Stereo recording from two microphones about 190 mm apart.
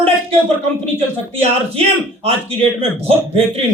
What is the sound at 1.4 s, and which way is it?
Speech, 30° right (ahead or behind).